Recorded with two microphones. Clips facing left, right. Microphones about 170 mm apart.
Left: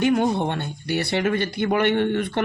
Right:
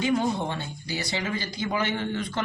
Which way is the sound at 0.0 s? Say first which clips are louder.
Left 5 dB; 65° left (ahead or behind).